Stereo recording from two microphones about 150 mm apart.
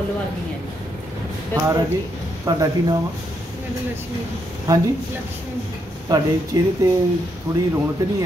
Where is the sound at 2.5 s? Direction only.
25° right (ahead or behind).